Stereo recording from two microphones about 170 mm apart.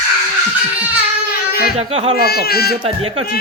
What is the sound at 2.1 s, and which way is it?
Speech, 65° left (ahead or behind).